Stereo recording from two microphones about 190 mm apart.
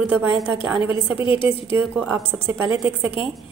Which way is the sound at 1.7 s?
10° right (ahead or behind).